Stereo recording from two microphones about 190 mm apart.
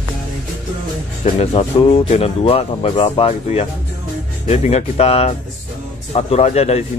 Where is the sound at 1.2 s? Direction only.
35° left (ahead or behind).